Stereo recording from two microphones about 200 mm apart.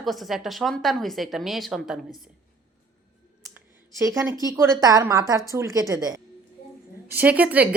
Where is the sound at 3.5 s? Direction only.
15° right (ahead or behind).